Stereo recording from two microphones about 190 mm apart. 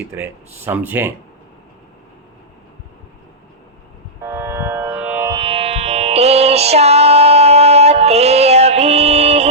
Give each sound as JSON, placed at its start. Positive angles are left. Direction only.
{"t": 0.1, "sound": "speech", "side_deg": -10}
{"t": 4.2, "sound": "music", "side_deg": -15}
{"t": 5.3, "sound": "music", "side_deg": -25}